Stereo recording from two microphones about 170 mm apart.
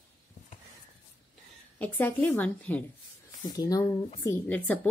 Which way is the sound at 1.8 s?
10° left (ahead or behind).